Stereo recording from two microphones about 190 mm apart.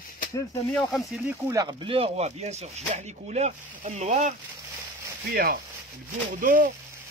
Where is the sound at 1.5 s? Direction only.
25° right (ahead or behind); by 4.3 s 40° right (ahead or behind).